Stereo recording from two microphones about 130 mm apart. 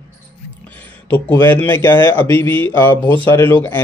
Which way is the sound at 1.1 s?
15° left (ahead or behind).